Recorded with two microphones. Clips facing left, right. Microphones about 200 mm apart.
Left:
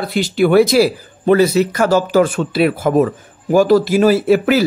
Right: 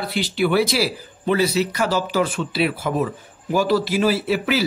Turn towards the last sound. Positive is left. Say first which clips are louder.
# left 8 dB
turn(degrees=50)  # may be behind; listen again after turning